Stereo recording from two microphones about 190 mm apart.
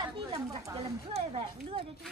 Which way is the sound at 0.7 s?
30° right (ahead or behind).